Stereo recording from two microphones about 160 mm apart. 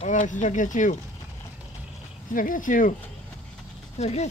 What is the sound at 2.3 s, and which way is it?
Speech, 55° left (ahead or behind).